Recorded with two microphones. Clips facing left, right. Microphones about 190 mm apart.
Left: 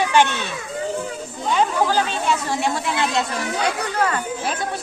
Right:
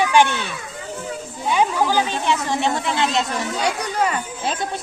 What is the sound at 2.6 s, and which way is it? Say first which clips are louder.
Speech: right 1 dB; 25° right (ahead or behind).